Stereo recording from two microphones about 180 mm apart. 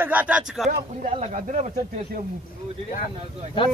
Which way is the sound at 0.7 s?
40° right (ahead or behind).